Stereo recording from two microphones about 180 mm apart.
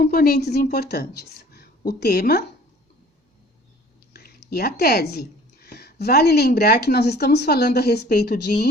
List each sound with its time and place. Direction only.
0.0 s a woman's voice: 55° left (ahead or behind)
4.1 s speech: 60° left (ahead or behind)